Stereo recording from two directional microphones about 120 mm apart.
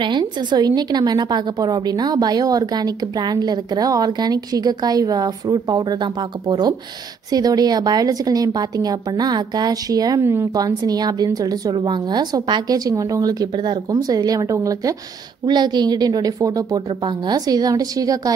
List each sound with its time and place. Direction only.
0.0 s a woman's voice: 40° right (ahead or behind)